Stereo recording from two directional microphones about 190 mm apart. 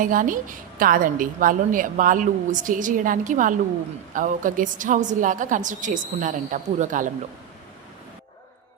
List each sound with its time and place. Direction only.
0.0 s a woman's voice: 45° right (ahead or behind)